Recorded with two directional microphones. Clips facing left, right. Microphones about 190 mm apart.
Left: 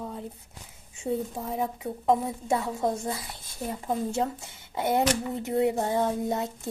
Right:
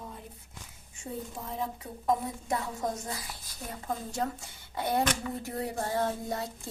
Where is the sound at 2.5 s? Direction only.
25° left (ahead or behind).